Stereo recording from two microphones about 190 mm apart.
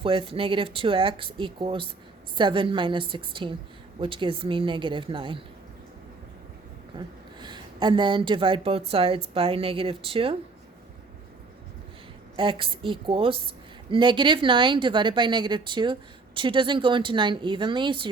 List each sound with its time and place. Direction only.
0.0 s speech: 30° right (ahead or behind)
6.9 s speech: 25° right (ahead or behind)
12.4 s speech: 25° right (ahead or behind)